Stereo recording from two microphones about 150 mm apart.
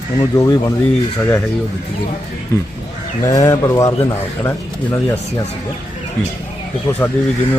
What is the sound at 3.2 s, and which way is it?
Speech, 20° left (ahead or behind).